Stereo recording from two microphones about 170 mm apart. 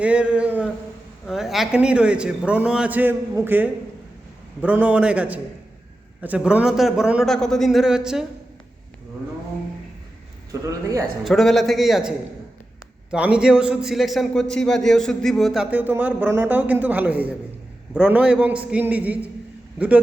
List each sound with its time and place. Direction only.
0.0 s a man's voice: 5° right (ahead or behind)
10.5 s a man's voice: 20° right (ahead or behind)
11.2 s a man's voice: centre (ahead or behind)